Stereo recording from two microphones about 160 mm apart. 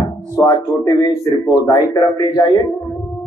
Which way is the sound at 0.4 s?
20° left (ahead or behind).